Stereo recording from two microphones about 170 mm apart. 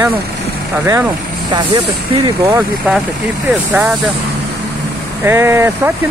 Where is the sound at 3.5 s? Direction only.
10° right (ahead or behind).